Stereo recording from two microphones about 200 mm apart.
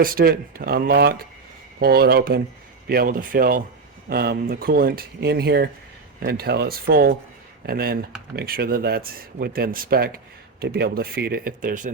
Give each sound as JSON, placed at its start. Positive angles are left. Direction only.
{"t": 0.0, "sound": "speech", "side_deg": -45}